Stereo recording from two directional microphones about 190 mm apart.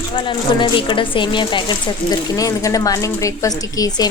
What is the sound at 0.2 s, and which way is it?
A woman's voice, 25° left (ahead or behind).